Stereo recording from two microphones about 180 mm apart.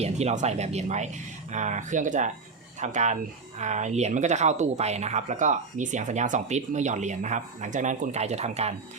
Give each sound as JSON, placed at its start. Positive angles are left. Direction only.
{"t": 0.0, "sound": "speech", "side_deg": -40}